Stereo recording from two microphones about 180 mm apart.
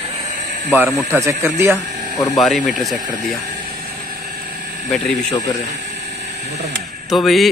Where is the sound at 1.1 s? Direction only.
15° right (ahead or behind).